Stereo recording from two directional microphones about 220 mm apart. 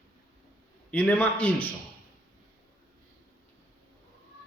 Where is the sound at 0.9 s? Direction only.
5° left (ahead or behind).